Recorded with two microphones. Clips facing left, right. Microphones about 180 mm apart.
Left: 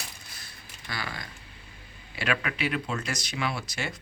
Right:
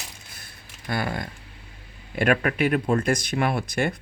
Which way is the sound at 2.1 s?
50° right (ahead or behind).